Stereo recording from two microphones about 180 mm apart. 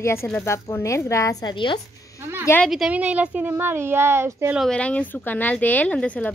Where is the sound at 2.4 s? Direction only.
10° left (ahead or behind).